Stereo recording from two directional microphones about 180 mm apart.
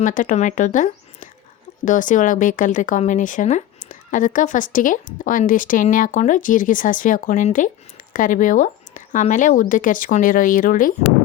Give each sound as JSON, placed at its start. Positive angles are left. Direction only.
{"t": 0.0, "sound": "speech", "side_deg": 45}